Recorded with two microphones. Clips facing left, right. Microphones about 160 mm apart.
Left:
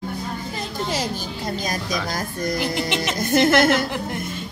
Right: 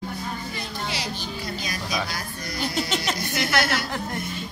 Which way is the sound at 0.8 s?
45° left (ahead or behind).